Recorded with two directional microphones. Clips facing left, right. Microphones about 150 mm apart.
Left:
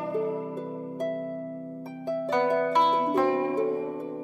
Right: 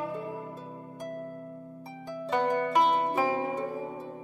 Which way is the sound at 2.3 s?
Centre (ahead or behind).